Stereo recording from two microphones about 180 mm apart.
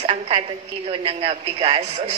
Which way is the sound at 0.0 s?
35° right (ahead or behind).